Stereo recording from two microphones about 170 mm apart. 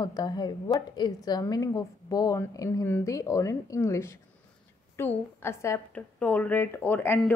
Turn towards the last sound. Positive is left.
turn(degrees=10)  # may be behind; listen again after turning